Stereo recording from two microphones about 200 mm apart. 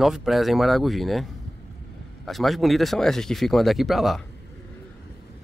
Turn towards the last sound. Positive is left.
turn(degrees=0)  # may be behind; listen again after turning